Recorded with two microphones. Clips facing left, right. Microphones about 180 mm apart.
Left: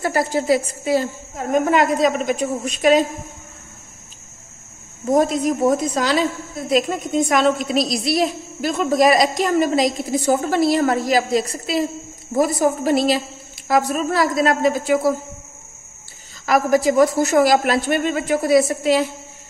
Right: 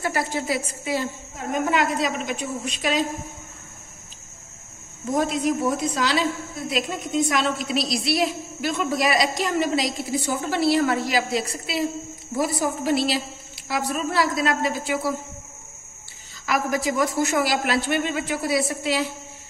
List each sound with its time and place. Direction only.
0.0 s a woman's voice: 40° left (ahead or behind)
5.1 s a woman's voice: 45° left (ahead or behind)
16.4 s a woman's voice: 40° left (ahead or behind)